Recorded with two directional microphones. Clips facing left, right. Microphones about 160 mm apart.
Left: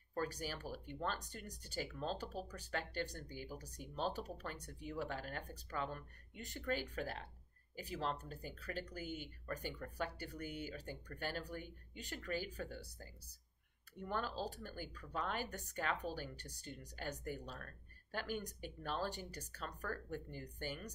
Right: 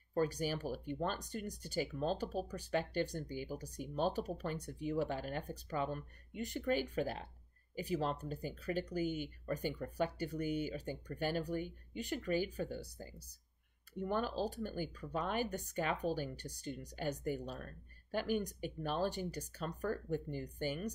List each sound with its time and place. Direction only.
0.1 s speech: 15° right (ahead or behind)